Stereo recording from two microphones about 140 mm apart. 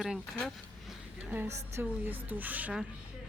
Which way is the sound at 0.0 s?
Centre (ahead or behind).